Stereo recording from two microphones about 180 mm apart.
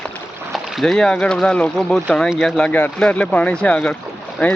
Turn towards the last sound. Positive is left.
turn(degrees=10)  # may be behind; listen again after turning